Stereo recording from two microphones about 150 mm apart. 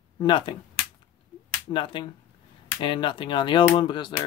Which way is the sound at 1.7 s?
35° left (ahead or behind).